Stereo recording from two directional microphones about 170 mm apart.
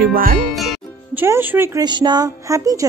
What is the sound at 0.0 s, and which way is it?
Speech, 55° right (ahead or behind).